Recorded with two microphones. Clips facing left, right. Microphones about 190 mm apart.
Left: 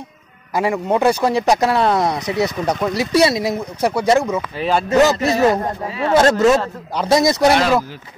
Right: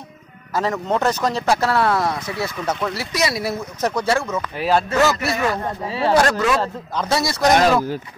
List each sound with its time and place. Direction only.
0.5 s speech: 10° left (ahead or behind)
3.1 s speech: 30° left (ahead or behind)
3.4 s speech: 15° left (ahead or behind)
4.6 s speech: centre (ahead or behind)
4.8 s speech: 15° left (ahead or behind)
5.1 s a man's voice: 35° left (ahead or behind)
5.9 s speech: 30° right (ahead or behind)
6.1 s speech: 25° left (ahead or behind)